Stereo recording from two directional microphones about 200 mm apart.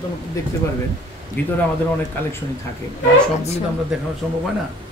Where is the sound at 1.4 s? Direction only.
10° left (ahead or behind).